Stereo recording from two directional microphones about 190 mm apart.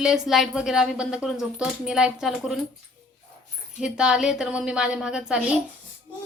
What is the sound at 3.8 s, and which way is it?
A woman's voice, 5° right (ahead or behind).